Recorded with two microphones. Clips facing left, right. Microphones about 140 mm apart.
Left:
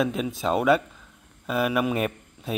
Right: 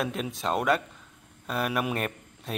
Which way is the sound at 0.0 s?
Centre (ahead or behind).